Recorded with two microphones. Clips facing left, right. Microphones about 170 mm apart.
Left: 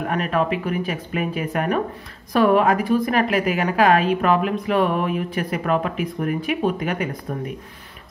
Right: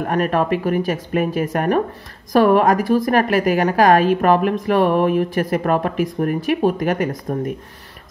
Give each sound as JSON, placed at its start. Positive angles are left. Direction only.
{"t": 0.1, "sound": "a woman's voice", "side_deg": -45}